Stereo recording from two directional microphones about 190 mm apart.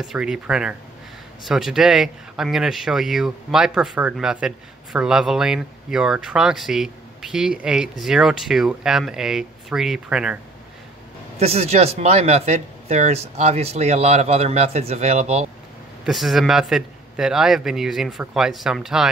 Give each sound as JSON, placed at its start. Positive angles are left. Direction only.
{"t": 0.0, "sound": "speech", "side_deg": -5}
{"t": 11.3, "sound": "speech", "side_deg": -35}
{"t": 16.1, "sound": "speech", "side_deg": 0}